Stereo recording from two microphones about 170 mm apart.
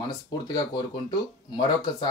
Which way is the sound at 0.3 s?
25° left (ahead or behind).